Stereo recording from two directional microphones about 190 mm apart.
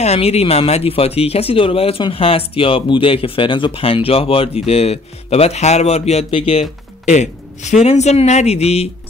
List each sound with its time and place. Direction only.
0.0 s speech: 35° left (ahead or behind)